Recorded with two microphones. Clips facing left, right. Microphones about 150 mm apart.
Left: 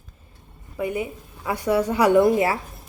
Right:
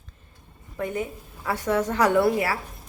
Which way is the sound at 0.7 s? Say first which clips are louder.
Left 2 dB; 10° left (ahead or behind).